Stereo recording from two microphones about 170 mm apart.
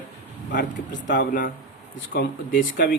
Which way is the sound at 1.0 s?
90° left.